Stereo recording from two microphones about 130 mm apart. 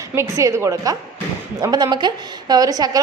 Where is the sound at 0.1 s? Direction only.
20° right (ahead or behind).